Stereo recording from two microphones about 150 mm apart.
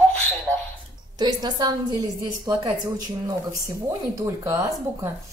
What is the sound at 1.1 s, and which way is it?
A woman's voice, 30° right (ahead or behind).